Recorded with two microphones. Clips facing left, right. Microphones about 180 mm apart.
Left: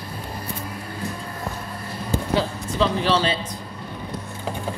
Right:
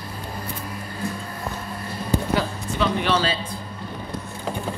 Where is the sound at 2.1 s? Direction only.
25° left (ahead or behind).